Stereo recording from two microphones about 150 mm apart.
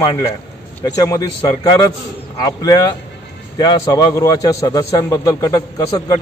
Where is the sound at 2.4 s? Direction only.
25° left (ahead or behind).